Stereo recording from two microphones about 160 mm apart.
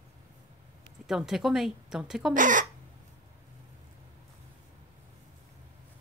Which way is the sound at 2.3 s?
55° right (ahead or behind).